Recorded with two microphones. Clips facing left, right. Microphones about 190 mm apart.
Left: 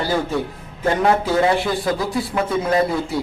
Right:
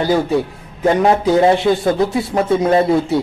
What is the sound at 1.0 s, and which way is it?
Speech, 25° right (ahead or behind).